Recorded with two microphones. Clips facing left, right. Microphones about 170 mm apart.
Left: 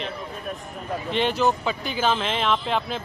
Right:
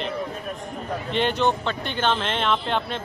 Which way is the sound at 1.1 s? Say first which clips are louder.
Even; centre (ahead or behind).